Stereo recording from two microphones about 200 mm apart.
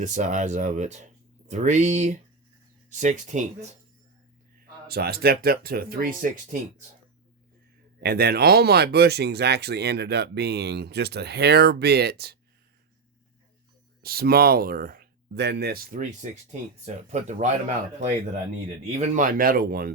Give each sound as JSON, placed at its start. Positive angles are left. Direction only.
{"t": 0.0, "sound": "speech", "side_deg": -35}
{"t": 4.9, "sound": "speech", "side_deg": -50}
{"t": 8.0, "sound": "speech", "side_deg": -50}
{"t": 14.0, "sound": "speech", "side_deg": -50}
{"t": 18.9, "sound": "speech", "side_deg": -35}